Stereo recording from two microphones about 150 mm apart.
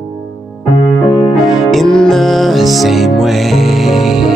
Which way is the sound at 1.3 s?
Centre (ahead or behind).